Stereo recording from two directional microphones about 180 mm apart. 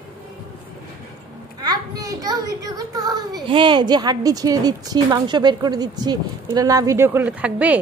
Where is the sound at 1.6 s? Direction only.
20° right (ahead or behind).